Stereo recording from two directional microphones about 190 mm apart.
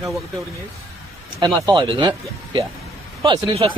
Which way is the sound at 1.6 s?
20° right (ahead or behind).